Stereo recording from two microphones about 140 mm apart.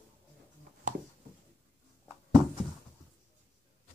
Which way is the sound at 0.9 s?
70° right (ahead or behind).